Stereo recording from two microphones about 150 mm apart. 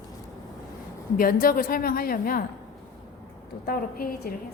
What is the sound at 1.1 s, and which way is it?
A woman's voice, 70° left (ahead or behind).